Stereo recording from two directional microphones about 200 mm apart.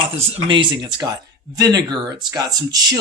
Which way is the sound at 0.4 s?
25° right (ahead or behind).